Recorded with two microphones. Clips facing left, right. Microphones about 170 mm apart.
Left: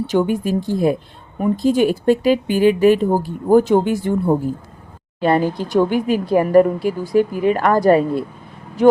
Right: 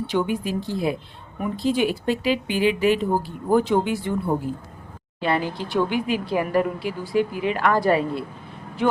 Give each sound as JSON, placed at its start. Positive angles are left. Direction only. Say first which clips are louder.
{"t": 0.1, "sound": "speech", "louder": "left 6 dB", "side_deg": 45}